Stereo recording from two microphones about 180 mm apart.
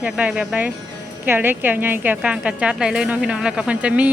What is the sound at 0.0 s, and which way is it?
Speech, 5° right (ahead or behind).